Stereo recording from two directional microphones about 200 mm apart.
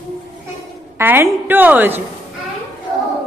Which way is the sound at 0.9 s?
10° right (ahead or behind).